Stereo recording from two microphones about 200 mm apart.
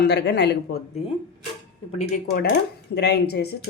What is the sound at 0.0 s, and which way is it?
Speech, 60° left (ahead or behind).